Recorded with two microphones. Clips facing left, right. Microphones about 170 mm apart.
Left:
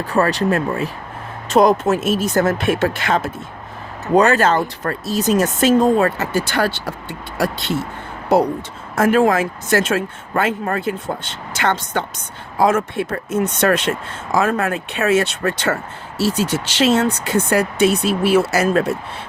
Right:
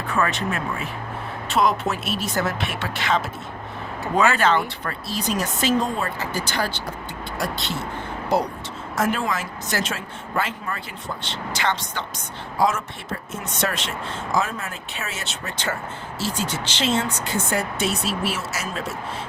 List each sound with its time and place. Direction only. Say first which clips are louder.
0.0 s speech: left 7 dB; 35° left (ahead or behind); by 6.1 s 50° left (ahead or behind)
6.1 s speech: left 7 dB; 65° left (ahead or behind)
9.0 s speech: left 10 dB; 55° left (ahead or behind)